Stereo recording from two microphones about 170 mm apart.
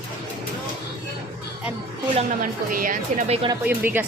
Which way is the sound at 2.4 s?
55° right (ahead or behind).